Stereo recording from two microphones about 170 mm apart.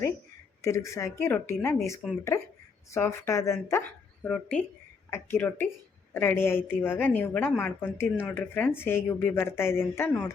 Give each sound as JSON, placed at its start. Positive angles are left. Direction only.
{"t": 0.6, "sound": "speech", "side_deg": 20}